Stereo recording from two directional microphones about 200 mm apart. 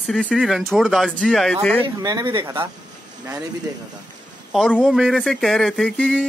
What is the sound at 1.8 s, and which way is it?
Speech, 20° right (ahead or behind).